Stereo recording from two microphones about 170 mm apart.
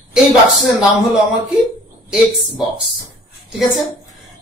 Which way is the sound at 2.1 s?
5° right (ahead or behind).